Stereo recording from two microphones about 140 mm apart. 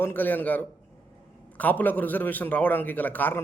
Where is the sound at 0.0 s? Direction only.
15° left (ahead or behind).